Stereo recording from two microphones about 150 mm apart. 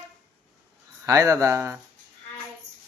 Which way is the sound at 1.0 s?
20° right (ahead or behind).